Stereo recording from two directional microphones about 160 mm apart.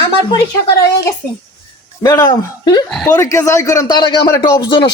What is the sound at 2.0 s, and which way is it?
Speech, 20° left (ahead or behind).